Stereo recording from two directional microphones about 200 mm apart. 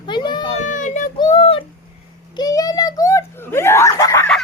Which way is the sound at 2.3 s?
20° left (ahead or behind).